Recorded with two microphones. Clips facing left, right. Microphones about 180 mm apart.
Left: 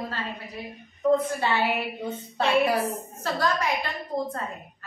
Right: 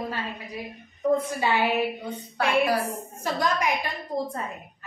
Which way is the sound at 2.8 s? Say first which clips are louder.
Left 1 dB; 15° right (ahead or behind).